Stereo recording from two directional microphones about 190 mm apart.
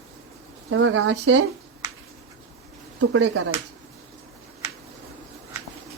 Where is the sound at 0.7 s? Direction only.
80° right.